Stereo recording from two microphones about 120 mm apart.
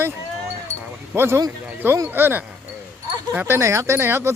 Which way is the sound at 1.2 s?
20° right (ahead or behind).